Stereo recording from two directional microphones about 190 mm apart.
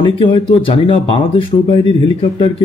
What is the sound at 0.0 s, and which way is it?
Speech, 25° left (ahead or behind).